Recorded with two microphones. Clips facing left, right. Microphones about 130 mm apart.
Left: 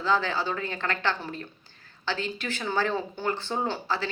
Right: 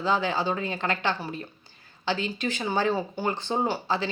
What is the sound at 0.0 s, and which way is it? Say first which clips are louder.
A man's voice: right 1 dB; 15° right (ahead or behind).